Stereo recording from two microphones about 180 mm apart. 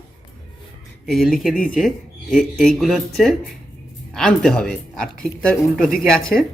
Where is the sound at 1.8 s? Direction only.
Centre (ahead or behind).